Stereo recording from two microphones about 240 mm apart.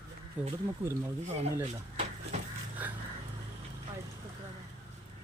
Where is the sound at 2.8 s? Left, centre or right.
Centre.